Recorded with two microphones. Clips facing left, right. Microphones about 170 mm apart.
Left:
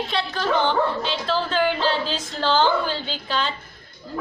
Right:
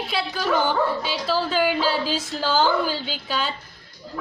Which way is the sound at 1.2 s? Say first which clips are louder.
Right 1 dB; 5° right (ahead or behind).